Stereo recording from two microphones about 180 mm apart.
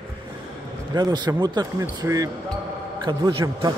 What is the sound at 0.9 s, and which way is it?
A man's voice, 20° right (ahead or behind).